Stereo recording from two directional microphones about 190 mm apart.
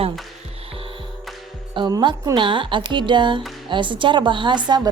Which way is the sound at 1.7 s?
25° right (ahead or behind).